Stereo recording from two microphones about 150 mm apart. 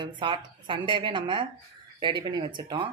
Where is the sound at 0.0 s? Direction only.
35° right (ahead or behind).